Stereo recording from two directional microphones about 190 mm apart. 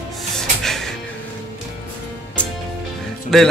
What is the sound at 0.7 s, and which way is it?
Music, centre (ahead or behind).